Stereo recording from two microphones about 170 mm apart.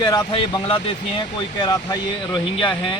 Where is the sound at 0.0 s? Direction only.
25° left (ahead or behind).